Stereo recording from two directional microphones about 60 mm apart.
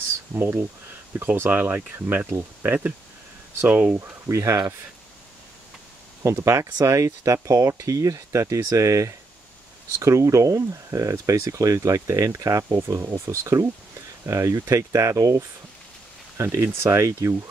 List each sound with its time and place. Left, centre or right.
0.3 s speech: right
4.3 s speech: right
6.2 s speech: right
6.8 s speech: right
16.4 s speech: right